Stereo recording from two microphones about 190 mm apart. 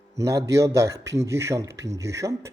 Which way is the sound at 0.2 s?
15° right (ahead or behind).